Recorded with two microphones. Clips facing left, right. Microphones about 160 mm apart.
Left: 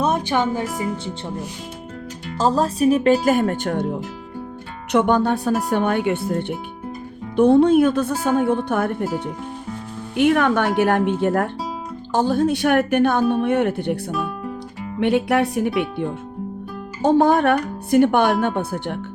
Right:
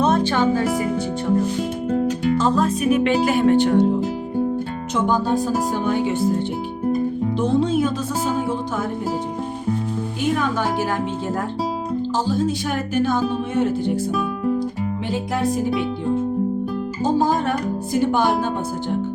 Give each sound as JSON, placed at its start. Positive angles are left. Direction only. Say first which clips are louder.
{"t": 0.0, "sound": "music", "louder": "right 2 dB", "side_deg": 15}
{"t": 2.4, "sound": "speech", "louder": "left 7 dB", "side_deg": 35}
{"t": 4.9, "sound": "speech", "louder": "left 3 dB", "side_deg": 65}
{"t": 10.2, "sound": "speech", "louder": "left 6 dB", "side_deg": 65}
{"t": 17.0, "sound": "speech", "louder": "left 5 dB", "side_deg": 65}